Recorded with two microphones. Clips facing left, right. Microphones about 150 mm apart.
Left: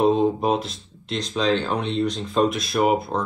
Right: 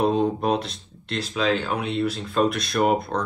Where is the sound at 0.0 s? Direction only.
Centre (ahead or behind).